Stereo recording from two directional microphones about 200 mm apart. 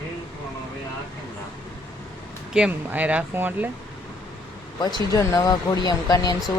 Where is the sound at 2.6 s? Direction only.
5° right (ahead or behind).